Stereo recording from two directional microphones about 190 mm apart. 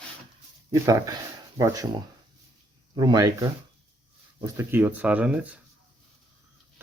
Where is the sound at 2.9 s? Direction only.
20° right (ahead or behind).